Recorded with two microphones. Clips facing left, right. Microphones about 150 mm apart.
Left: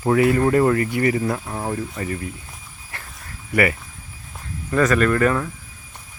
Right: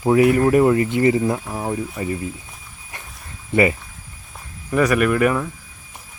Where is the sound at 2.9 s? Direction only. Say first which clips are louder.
Even; 15° right (ahead or behind).